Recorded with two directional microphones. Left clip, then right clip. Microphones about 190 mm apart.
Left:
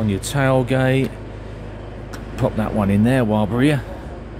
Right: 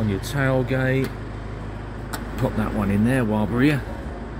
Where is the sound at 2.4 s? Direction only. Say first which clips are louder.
Left 5 dB; 20° left (ahead or behind).